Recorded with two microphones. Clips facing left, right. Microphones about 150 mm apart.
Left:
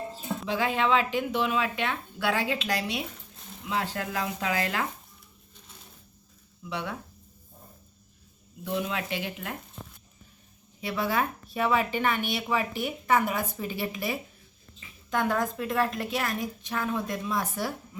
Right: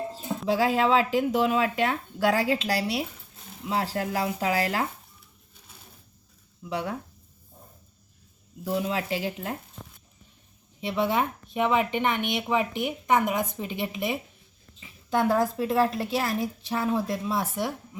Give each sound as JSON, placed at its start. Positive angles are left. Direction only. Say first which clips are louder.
{"t": 0.4, "sound": "speech", "louder": "right 4 dB", "side_deg": -35}
{"t": 6.7, "sound": "speech", "louder": "right 4 dB", "side_deg": -40}
{"t": 8.6, "sound": "speech", "louder": "right 3 dB", "side_deg": -35}
{"t": 10.8, "sound": "speech", "louder": "right 3 dB", "side_deg": -25}